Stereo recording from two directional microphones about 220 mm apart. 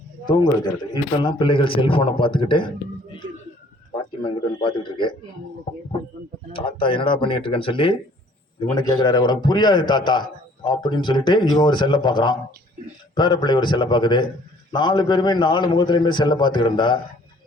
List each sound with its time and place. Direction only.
0.3 s a man's voice: 20° left (ahead or behind)
3.9 s a man's voice: 20° left (ahead or behind)
6.5 s a man's voice: 25° left (ahead or behind)